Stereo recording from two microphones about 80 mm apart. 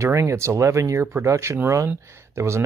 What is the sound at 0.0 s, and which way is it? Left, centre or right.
Speech, right.